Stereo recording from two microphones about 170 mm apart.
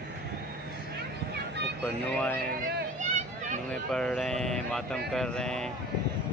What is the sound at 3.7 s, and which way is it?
Speech, 5° left (ahead or behind).